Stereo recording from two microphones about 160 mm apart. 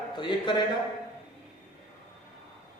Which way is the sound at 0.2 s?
30° left (ahead or behind).